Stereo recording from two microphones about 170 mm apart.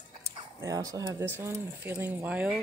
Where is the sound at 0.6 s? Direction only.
20° right (ahead or behind).